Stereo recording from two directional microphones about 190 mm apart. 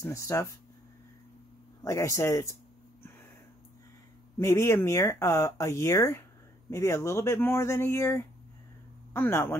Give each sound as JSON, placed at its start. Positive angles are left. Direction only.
{"t": 0.0, "sound": "speech", "side_deg": 15}
{"t": 1.9, "sound": "speech", "side_deg": 15}
{"t": 4.4, "sound": "speech", "side_deg": 15}